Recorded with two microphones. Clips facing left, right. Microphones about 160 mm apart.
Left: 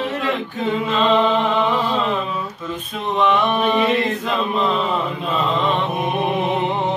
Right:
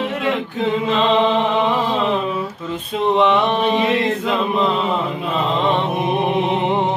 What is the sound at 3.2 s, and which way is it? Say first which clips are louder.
Mantra: left 1 dB; 25° right (ahead or behind).